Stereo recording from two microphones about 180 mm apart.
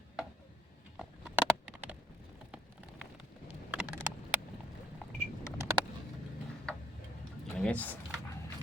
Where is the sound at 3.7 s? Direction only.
10° right (ahead or behind).